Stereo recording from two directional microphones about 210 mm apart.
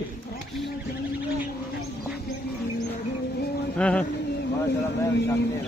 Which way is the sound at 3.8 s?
5° left (ahead or behind).